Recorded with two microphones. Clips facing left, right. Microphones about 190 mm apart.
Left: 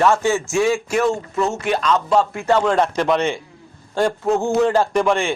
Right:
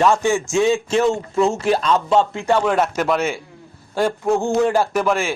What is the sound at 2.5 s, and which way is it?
A man's voice, 10° right (ahead or behind).